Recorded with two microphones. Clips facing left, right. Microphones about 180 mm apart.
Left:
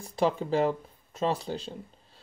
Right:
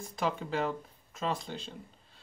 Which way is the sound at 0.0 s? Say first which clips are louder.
Left 6 dB; 30° left (ahead or behind).